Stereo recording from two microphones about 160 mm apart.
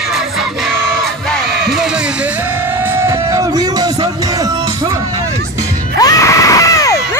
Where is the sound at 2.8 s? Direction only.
15° right (ahead or behind).